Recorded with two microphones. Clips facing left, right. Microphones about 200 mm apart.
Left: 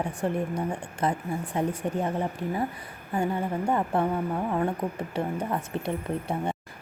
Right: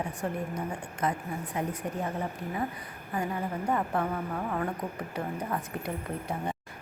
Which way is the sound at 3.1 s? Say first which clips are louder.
Left 5 dB; 30° left (ahead or behind).